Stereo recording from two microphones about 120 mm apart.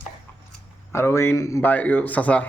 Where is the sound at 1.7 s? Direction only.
15° left (ahead or behind).